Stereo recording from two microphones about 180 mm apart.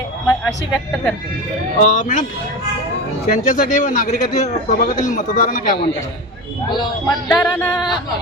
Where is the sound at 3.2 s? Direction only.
45° left (ahead or behind).